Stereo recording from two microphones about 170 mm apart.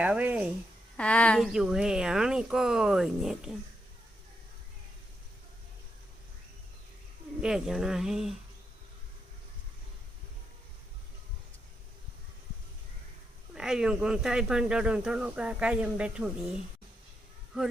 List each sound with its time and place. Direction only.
0.0 s speech: 10° right (ahead or behind)
0.9 s speech: 5° left (ahead or behind)
7.4 s speech: 5° right (ahead or behind)
13.5 s speech: 5° right (ahead or behind)